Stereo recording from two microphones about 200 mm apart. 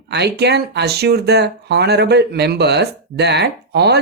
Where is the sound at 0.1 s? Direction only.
55° right (ahead or behind).